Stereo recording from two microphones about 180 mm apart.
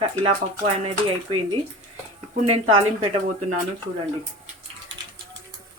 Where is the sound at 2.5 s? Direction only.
35° right (ahead or behind).